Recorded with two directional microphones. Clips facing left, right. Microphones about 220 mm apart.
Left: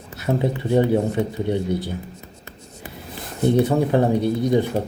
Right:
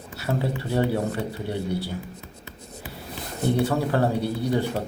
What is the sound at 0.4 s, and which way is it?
Speech, 20° left (ahead or behind).